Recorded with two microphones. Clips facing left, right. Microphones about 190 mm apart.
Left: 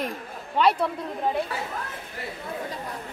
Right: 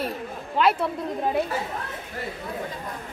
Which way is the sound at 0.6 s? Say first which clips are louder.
Even; centre (ahead or behind).